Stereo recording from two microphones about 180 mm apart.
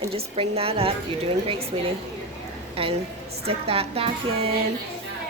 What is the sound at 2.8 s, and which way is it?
A woman's voice, 30° right (ahead or behind).